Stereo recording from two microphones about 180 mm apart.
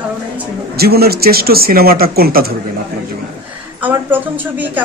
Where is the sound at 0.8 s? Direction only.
60° right (ahead or behind).